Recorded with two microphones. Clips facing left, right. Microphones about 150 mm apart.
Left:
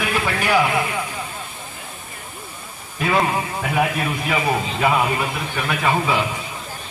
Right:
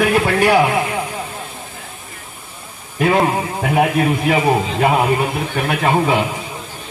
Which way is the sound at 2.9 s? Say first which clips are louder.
Right 5 dB; 50° right (ahead or behind).